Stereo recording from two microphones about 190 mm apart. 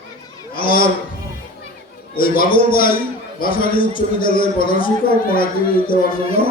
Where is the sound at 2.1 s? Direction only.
50° left (ahead or behind).